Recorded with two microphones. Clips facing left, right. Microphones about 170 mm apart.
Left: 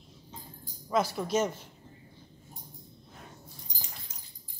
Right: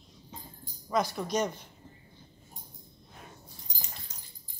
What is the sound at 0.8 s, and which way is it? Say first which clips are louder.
Speech: left 1 dB; 5° left (ahead or behind).